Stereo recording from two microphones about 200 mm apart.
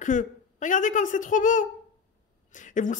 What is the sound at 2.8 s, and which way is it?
Speech, 40° left (ahead or behind).